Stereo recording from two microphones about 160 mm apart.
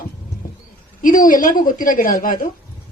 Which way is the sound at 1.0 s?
55° left (ahead or behind).